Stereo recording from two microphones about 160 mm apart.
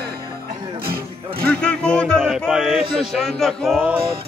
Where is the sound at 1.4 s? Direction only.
5° left (ahead or behind).